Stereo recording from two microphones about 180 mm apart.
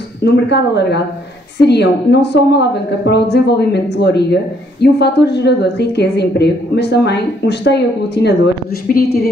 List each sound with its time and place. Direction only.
0.2 s a woman's voice: 70° left (ahead or behind)